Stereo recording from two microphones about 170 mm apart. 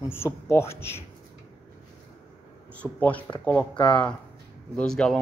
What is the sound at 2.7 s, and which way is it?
Speech, 10° left (ahead or behind).